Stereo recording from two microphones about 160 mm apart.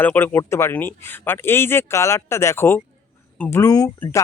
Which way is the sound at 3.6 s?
20° left (ahead or behind).